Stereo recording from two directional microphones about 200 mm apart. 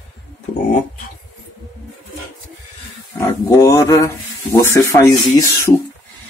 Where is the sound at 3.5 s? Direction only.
15° left (ahead or behind).